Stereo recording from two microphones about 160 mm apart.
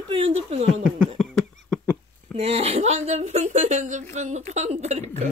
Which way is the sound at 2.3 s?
40° right (ahead or behind).